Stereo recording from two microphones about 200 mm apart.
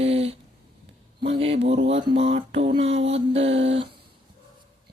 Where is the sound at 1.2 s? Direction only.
30° right (ahead or behind).